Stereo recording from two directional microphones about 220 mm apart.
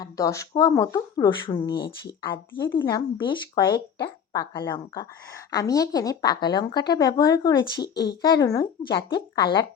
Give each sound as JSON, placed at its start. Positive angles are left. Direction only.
{"t": 0.0, "sound": "a woman's voice", "side_deg": 15}